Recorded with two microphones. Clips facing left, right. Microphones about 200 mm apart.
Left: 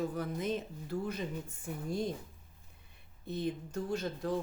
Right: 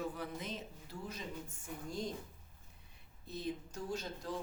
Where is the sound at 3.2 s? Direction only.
55° left (ahead or behind).